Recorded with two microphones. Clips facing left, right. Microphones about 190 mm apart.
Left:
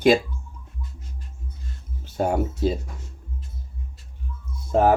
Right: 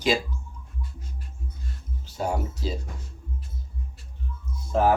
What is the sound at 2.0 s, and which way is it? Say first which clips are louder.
Speech: left 5 dB; 55° left (ahead or behind).